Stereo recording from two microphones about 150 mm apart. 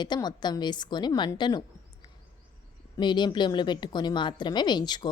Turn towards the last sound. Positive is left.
turn(degrees=30)  # may be behind; listen again after turning